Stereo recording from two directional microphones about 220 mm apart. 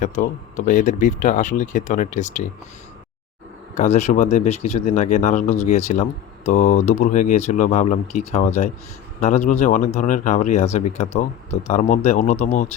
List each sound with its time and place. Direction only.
0.0 s speech: 35° left (ahead or behind)
3.8 s speech: 30° left (ahead or behind)